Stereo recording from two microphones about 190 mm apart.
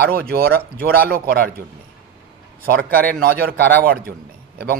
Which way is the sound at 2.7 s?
50° right (ahead or behind).